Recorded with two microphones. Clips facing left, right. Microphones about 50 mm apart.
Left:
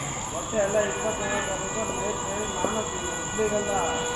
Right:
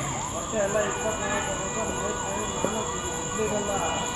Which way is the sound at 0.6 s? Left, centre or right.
Centre.